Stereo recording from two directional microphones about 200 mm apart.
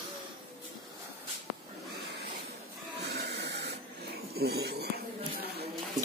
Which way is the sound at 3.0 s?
55° right (ahead or behind).